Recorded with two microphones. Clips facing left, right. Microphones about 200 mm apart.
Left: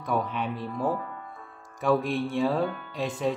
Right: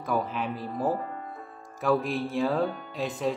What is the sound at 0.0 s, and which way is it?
Speech, centre (ahead or behind).